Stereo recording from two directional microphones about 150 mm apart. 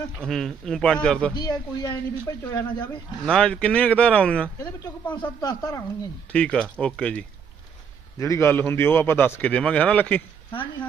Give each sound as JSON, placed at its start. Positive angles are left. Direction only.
{"t": 0.3, "sound": "a man's voice", "side_deg": 0}
{"t": 1.4, "sound": "speech", "side_deg": 25}
{"t": 3.2, "sound": "a man's voice", "side_deg": 5}
{"t": 5.1, "sound": "speech", "side_deg": 30}
{"t": 6.3, "sound": "a man's voice", "side_deg": 5}
{"t": 8.2, "sound": "a man's voice", "side_deg": 20}